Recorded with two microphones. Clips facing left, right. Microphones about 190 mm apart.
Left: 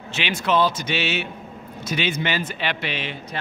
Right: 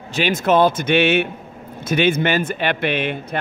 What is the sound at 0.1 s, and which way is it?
Speech, 45° right (ahead or behind).